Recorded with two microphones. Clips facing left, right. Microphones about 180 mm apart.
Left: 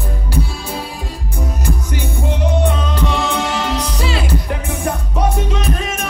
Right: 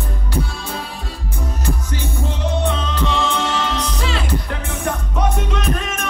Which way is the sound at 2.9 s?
15° left (ahead or behind).